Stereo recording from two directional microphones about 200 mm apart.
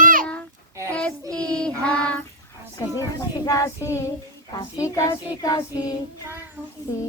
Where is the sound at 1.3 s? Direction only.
5° left (ahead or behind).